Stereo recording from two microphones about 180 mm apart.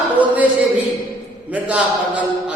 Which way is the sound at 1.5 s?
10° right (ahead or behind).